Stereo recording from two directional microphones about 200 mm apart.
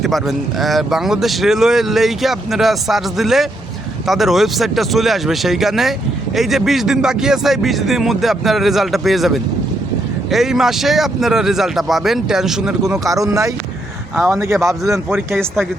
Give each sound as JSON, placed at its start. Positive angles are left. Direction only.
{"t": 0.0, "sound": "speech", "side_deg": 0}
{"t": 13.1, "sound": "speech", "side_deg": -15}